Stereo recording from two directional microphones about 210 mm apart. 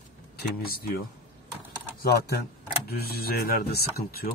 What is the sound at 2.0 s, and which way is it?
Speech, 50° left (ahead or behind).